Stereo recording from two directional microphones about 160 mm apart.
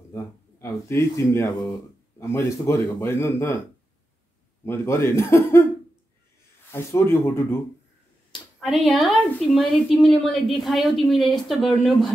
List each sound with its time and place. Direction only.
0.1 s a man's voice: 15° left (ahead or behind)
4.6 s a man's voice: 15° left (ahead or behind)
6.7 s a man's voice: 15° left (ahead or behind)
8.5 s a woman's voice: centre (ahead or behind)